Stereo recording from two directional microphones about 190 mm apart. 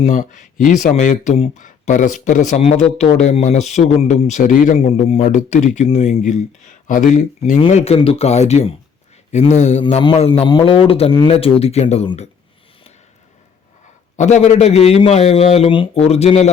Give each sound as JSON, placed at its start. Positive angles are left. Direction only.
{"t": 0.0, "sound": "speech", "side_deg": 45}
{"t": 4.8, "sound": "speech", "side_deg": 30}
{"t": 9.8, "sound": "speech", "side_deg": 25}
{"t": 14.2, "sound": "speech", "side_deg": 35}